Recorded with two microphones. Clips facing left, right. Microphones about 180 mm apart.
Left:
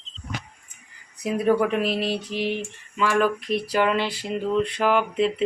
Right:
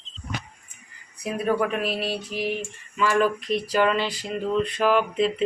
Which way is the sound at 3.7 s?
15° left (ahead or behind).